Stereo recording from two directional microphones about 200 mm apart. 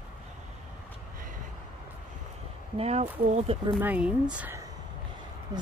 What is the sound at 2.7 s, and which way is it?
Speech, 30° right (ahead or behind).